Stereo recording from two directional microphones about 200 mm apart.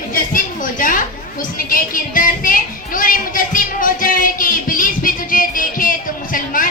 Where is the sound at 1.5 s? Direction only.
45° left (ahead or behind).